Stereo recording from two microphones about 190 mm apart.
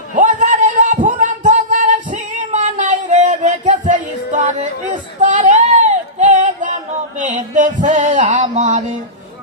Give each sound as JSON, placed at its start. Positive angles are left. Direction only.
{"t": 0.1, "sound": "music", "side_deg": -40}
{"t": 5.2, "sound": "a sound", "side_deg": -40}
{"t": 7.2, "sound": "music", "side_deg": -40}